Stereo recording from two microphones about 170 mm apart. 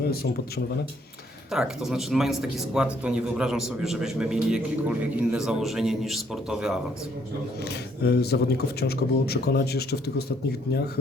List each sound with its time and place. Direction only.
0.0 s speech: 65° left (ahead or behind)
1.5 s speech: 5° right (ahead or behind)
7.6 s speech: 75° left (ahead or behind)